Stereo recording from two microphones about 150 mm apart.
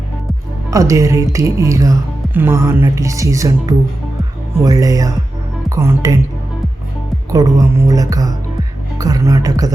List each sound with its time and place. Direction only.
0.7 s speech: 20° right (ahead or behind)
7.3 s speech: 25° right (ahead or behind)